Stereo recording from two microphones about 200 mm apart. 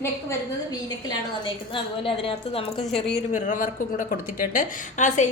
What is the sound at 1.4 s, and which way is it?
A woman's voice, 25° left (ahead or behind).